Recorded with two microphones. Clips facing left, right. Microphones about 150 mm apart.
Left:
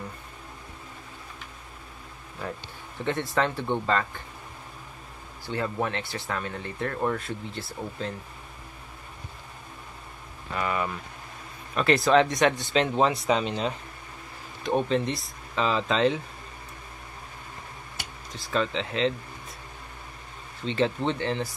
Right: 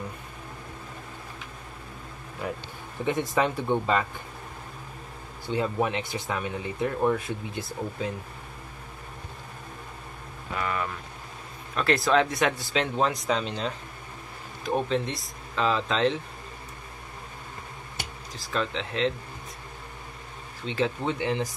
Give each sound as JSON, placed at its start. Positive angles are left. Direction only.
{"t": 3.1, "sound": "speech", "side_deg": -15}
{"t": 5.5, "sound": "speech", "side_deg": -15}
{"t": 10.5, "sound": "speech", "side_deg": 5}
{"t": 18.3, "sound": "speech", "side_deg": 0}
{"t": 20.6, "sound": "speech", "side_deg": -5}